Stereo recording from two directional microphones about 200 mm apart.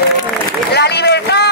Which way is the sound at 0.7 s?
55° left (ahead or behind).